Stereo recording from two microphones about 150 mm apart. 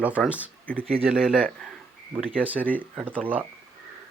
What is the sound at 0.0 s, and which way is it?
Speech, 10° right (ahead or behind).